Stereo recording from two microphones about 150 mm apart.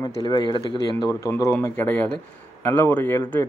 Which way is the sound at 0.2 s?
30° left (ahead or behind).